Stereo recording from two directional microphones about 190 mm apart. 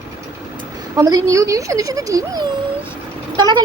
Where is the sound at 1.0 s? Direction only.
20° right (ahead or behind).